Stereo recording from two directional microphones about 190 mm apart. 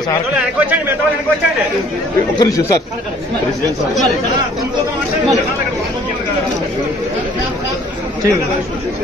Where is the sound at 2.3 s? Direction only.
20° left (ahead or behind).